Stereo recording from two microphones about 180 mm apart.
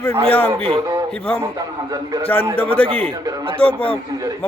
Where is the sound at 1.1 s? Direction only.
10° left (ahead or behind).